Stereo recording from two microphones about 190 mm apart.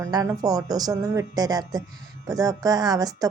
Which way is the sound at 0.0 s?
15° right (ahead or behind).